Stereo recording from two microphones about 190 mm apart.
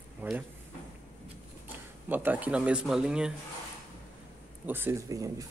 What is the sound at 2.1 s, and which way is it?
Speech, 10° right (ahead or behind).